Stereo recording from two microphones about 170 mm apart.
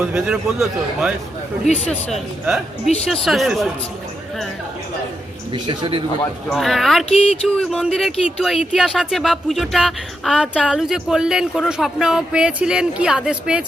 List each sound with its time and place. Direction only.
0.0 s speech: 5° right (ahead or behind)
5.6 s speech: 30° right (ahead or behind)
6.5 s speech: centre (ahead or behind)